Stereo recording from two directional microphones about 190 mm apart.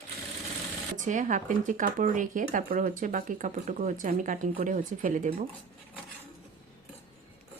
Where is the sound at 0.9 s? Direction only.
40° right (ahead or behind).